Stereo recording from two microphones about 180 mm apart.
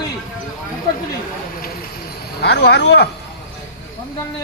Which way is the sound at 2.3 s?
70° left (ahead or behind).